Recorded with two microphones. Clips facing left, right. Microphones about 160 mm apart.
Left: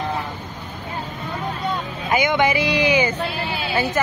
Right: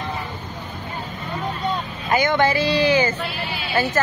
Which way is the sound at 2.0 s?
15° left (ahead or behind).